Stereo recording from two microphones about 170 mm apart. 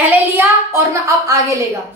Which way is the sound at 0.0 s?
15° right (ahead or behind).